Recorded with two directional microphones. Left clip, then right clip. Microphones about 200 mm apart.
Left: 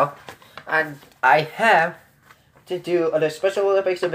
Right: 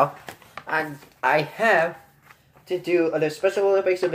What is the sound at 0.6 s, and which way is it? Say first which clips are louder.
Speech: left 4 dB; 15° left (ahead or behind).